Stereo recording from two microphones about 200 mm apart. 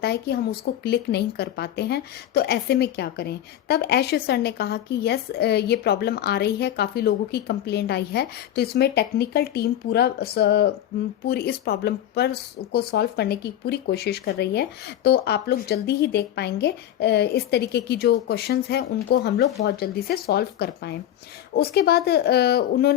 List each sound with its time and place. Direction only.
0.0 s speech: 55° left (ahead or behind)